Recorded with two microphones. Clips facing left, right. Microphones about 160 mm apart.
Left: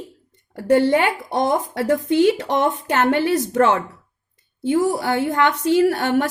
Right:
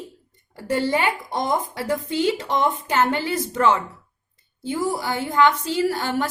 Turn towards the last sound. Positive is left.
turn(degrees=65)  # may be behind; listen again after turning